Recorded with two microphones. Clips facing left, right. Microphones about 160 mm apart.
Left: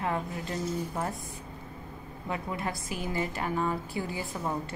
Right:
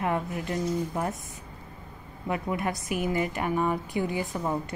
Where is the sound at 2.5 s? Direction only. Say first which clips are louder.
Right 5 dB; 20° right (ahead or behind).